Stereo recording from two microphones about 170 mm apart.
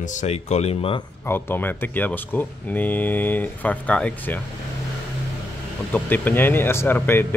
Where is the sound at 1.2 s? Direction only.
15° left (ahead or behind).